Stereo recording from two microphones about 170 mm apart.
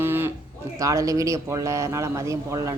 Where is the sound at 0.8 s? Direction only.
20° right (ahead or behind).